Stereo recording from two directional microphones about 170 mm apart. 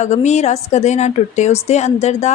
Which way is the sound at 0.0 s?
40° left (ahead or behind).